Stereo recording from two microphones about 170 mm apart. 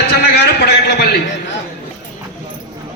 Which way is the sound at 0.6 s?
70° left (ahead or behind).